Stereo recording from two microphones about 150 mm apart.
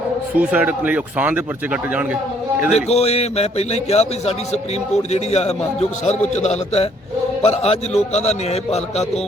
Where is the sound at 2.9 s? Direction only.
45° left (ahead or behind).